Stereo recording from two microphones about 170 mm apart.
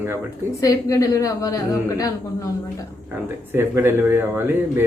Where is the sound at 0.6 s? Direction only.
20° left (ahead or behind).